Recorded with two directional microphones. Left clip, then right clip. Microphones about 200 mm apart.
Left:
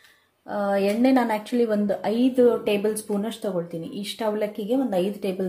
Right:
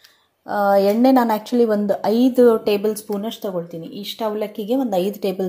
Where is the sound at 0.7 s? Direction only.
20° right (ahead or behind).